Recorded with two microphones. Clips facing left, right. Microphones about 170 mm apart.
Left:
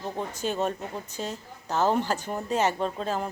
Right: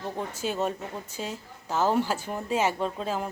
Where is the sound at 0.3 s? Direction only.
5° right (ahead or behind).